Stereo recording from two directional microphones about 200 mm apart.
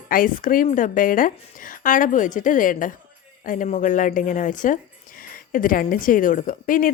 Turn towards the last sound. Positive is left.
turn(degrees=45)  # may be behind; listen again after turning